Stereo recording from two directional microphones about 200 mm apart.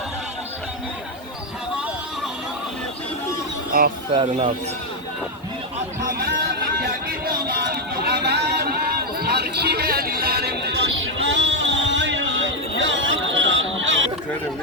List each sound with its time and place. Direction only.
3.7 s speech: 45° right (ahead or behind)
4.1 s speech: 25° right (ahead or behind)
6.0 s chatter: 45° right (ahead or behind)
7.1 s a sound: 50° right (ahead or behind); by 14.1 s 70° right (ahead or behind)